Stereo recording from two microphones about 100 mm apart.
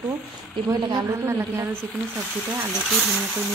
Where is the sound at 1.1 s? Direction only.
25° right (ahead or behind).